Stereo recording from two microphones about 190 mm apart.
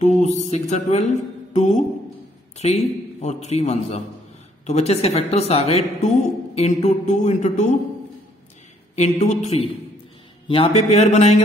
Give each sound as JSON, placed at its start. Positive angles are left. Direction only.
{"t": 0.0, "sound": "a woman's voice", "side_deg": 40}
{"t": 8.9, "sound": "a woman's voice", "side_deg": 35}